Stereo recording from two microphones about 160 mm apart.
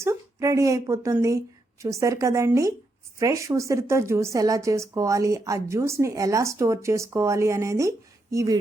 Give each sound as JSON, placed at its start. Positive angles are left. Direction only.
{"t": 0.0, "sound": "a woman's voice", "side_deg": -15}